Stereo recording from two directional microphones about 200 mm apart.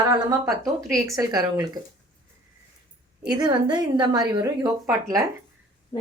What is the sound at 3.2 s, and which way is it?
A woman's voice, 20° right (ahead or behind).